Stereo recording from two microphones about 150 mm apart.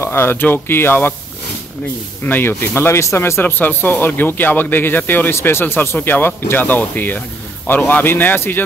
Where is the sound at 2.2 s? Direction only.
15° left (ahead or behind).